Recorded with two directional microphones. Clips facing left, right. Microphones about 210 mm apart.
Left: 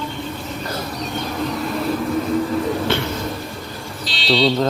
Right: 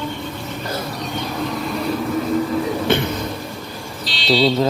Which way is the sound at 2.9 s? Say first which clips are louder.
Right 3 dB; 15° right (ahead or behind).